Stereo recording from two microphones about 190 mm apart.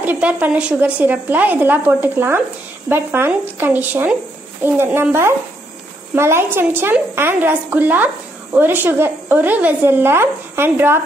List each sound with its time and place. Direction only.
0.0 s a woman's voice: 5° right (ahead or behind)